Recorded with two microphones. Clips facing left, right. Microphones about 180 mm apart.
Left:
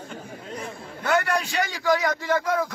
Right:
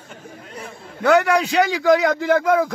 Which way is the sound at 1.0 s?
70° right (ahead or behind).